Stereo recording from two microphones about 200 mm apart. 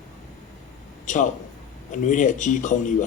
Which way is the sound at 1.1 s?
40° left (ahead or behind).